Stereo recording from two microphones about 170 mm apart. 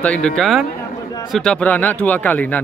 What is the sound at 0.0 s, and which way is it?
Speech, 5° left (ahead or behind).